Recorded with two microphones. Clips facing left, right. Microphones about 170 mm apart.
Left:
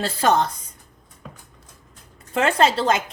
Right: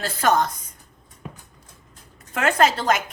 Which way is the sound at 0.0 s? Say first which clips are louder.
Left 1 dB; 25° left (ahead or behind).